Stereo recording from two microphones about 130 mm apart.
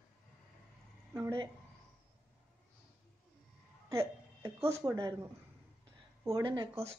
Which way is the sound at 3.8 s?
25° right (ahead or behind).